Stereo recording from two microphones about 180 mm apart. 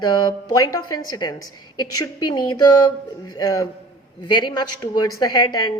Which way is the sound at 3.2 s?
20° left (ahead or behind).